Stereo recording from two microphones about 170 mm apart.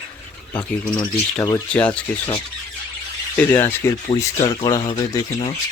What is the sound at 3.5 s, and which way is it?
Speech, 15° left (ahead or behind).